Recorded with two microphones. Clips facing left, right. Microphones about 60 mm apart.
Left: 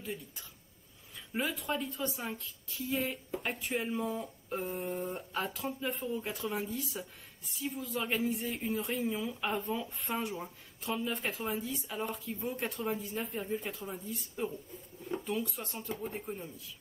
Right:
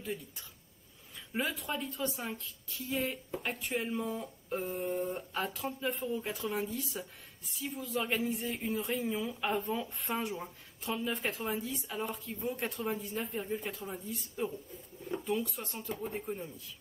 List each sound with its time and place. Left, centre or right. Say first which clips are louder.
0.0 s a woman's voice: right 2 dB; centre